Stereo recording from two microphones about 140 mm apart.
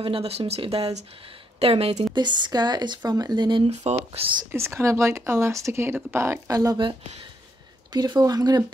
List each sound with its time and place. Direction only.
0.0 s speech: 45° right (ahead or behind)
2.1 s speech: 30° right (ahead or behind)
3.6 s speech: 45° right (ahead or behind)
4.5 s speech: 20° right (ahead or behind)